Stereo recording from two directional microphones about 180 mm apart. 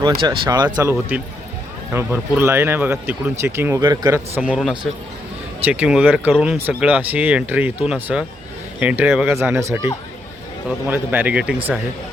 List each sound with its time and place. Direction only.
0.0 s speech: 25° right (ahead or behind)
4.4 s speech: 5° right (ahead or behind)
10.8 s speech: 10° right (ahead or behind)